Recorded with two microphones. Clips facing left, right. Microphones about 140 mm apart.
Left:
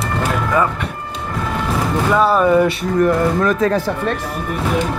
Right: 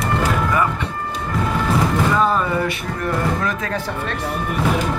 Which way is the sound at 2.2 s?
10° left (ahead or behind).